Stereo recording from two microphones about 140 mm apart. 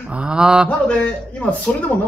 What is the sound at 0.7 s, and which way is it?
Speech, 10° left (ahead or behind).